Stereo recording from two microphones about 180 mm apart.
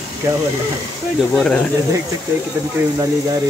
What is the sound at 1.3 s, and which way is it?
Speech, 5° left (ahead or behind).